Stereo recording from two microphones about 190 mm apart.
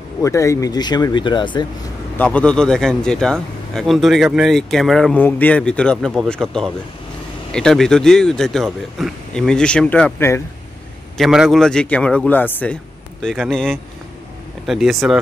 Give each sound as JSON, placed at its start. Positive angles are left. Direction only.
{"t": 0.2, "sound": "speech", "side_deg": 15}
{"t": 2.1, "sound": "a man's voice", "side_deg": 5}
{"t": 11.1, "sound": "a man's voice", "side_deg": 0}